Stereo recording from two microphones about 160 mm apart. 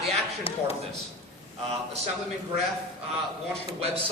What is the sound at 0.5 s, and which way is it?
Speech, 35° left (ahead or behind).